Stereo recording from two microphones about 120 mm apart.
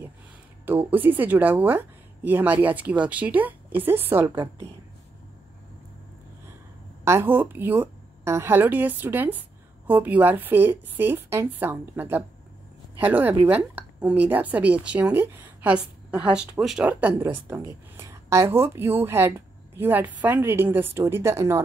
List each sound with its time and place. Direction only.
0.7 s speech: 15° right (ahead or behind)
7.1 s a woman's voice: 20° right (ahead or behind)